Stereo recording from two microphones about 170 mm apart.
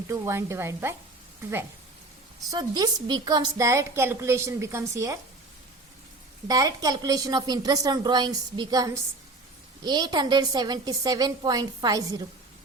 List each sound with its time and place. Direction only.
0.1 s a woman's voice: 15° right (ahead or behind)
2.5 s a woman's voice: 25° right (ahead or behind)
6.5 s a woman's voice: 20° right (ahead or behind)